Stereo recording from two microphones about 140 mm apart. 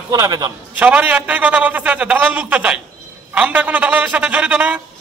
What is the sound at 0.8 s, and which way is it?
A man's voice, 10° right (ahead or behind).